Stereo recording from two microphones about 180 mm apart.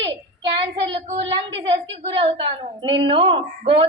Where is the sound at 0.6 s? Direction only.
30° right (ahead or behind).